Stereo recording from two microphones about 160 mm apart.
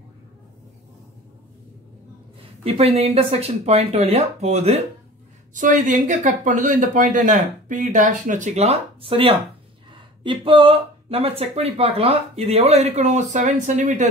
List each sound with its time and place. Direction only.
2.6 s speech: 40° right (ahead or behind)
5.5 s speech: 55° right (ahead or behind)